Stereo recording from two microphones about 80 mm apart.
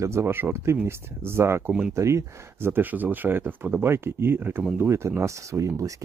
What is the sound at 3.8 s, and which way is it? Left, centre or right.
Speech, right.